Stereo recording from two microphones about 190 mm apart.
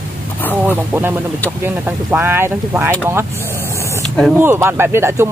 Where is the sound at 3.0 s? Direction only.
10° right (ahead or behind).